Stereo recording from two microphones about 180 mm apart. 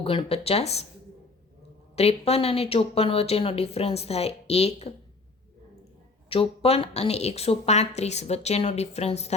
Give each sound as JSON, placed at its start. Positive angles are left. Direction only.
{"t": 0.0, "sound": "a woman's voice", "side_deg": 30}
{"t": 2.0, "sound": "a woman's voice", "side_deg": 35}
{"t": 6.3, "sound": "a woman's voice", "side_deg": 30}